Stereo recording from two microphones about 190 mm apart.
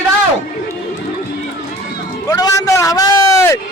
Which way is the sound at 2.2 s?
20° left (ahead or behind).